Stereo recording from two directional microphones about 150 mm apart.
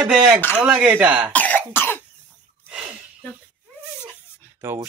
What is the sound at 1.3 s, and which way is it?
Cough, 10° left (ahead or behind).